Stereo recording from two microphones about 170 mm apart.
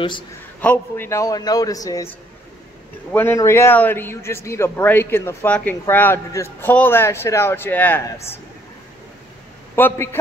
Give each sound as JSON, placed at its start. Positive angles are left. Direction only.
{"t": 0.6, "sound": "a man's voice", "side_deg": 10}
{"t": 3.1, "sound": "a man's voice", "side_deg": 15}
{"t": 9.8, "sound": "a man's voice", "side_deg": 10}